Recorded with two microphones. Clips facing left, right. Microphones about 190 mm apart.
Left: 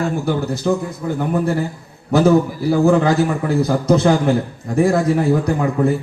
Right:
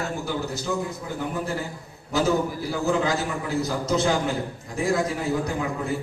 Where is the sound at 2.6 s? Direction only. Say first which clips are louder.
Left 11 dB; 55° left (ahead or behind).